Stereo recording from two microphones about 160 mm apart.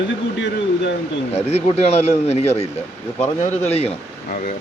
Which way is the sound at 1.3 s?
40° left (ahead or behind).